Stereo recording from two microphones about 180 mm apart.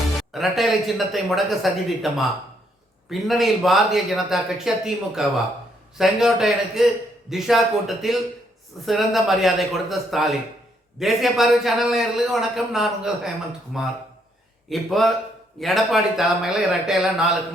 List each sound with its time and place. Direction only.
0.2 s a man's voice: centre (ahead or behind)